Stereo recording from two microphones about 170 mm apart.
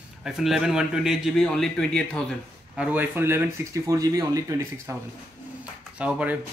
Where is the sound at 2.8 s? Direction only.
10° right (ahead or behind).